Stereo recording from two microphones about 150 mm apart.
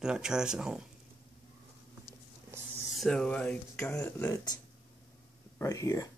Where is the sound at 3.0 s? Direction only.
5° left (ahead or behind).